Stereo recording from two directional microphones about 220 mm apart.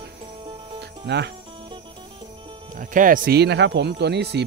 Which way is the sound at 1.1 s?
50° right (ahead or behind).